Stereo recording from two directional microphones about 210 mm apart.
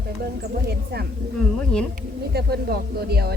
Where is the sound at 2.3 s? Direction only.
50° right (ahead or behind).